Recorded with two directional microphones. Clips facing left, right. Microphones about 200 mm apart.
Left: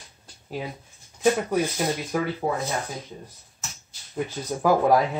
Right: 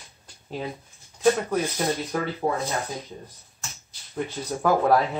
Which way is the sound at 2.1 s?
10° left (ahead or behind).